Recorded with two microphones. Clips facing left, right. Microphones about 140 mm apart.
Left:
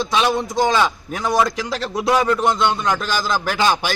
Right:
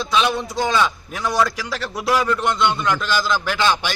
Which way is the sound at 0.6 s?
30° left (ahead or behind).